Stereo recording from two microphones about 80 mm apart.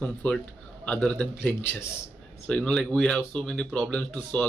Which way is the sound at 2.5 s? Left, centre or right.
Centre.